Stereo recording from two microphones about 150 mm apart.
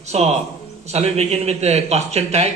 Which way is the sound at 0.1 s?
45° right (ahead or behind).